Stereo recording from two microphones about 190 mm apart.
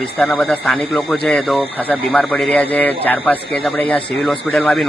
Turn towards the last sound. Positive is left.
turn(degrees=0)  # may be behind; listen again after turning